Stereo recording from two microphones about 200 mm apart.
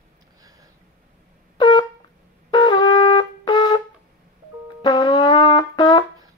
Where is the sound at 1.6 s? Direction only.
25° left (ahead or behind).